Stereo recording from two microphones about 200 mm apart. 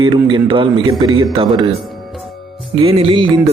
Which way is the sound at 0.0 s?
25° right (ahead or behind).